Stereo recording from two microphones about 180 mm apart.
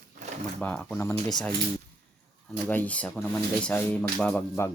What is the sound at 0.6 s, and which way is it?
Speech, 10° left (ahead or behind).